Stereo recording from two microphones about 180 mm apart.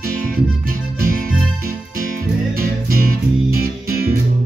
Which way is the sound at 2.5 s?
55° right (ahead or behind).